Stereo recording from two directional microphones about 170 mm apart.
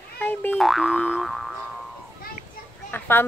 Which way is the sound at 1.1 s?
Centre (ahead or behind).